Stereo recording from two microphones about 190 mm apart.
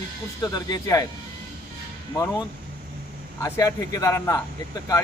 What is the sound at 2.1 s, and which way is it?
A man's voice, 15° left (ahead or behind).